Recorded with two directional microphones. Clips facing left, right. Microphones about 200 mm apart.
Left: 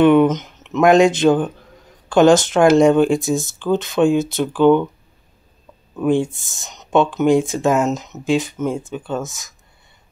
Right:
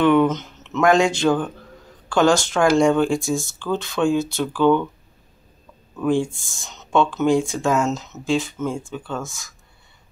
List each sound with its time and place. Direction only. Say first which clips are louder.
0.0 s speech: left 4 dB; 20° left (ahead or behind)
5.9 s speech: left 3 dB; 20° left (ahead or behind)